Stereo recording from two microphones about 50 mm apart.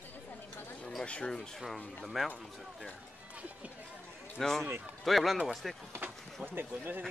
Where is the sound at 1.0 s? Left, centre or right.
Left.